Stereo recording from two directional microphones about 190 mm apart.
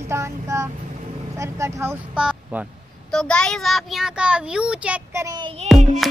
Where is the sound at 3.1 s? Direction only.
5° left (ahead or behind); by 5.5 s 20° right (ahead or behind).